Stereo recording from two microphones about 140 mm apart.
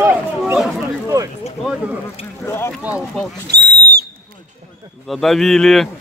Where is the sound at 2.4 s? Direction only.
20° left (ahead or behind).